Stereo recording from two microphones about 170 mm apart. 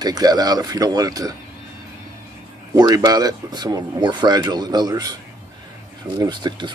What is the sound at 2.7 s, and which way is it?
Speech, 20° right (ahead or behind).